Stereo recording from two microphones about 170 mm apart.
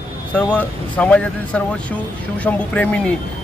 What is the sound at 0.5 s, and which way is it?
Speech, 10° left (ahead or behind).